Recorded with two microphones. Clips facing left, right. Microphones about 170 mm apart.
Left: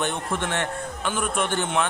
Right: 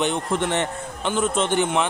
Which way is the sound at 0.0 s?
15° right (ahead or behind).